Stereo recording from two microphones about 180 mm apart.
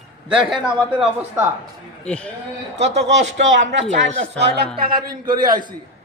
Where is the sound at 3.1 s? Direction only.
80° right.